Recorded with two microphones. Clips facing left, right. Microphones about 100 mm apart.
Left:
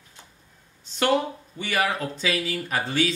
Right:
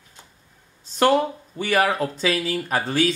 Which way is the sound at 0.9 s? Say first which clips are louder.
Right 4 dB; 40° right (ahead or behind).